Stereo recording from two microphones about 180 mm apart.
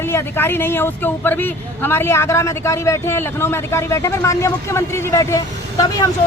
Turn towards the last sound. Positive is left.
turn(degrees=20)  # may be behind; listen again after turning